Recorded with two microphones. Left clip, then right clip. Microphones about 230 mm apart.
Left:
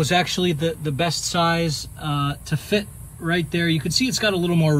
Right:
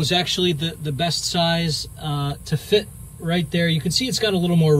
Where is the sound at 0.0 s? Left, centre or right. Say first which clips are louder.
Even; left.